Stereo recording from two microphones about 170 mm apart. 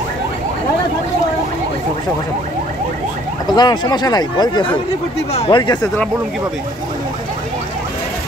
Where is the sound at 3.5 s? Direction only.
25° left (ahead or behind).